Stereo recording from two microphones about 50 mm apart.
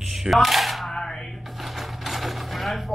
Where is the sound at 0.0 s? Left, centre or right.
Centre.